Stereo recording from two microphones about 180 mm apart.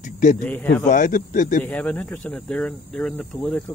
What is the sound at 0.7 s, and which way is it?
Speech, 45° left (ahead or behind).